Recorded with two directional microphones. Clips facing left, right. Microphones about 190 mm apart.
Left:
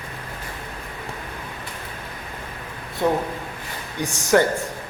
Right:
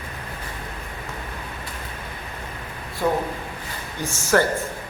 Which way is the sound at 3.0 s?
20° left (ahead or behind).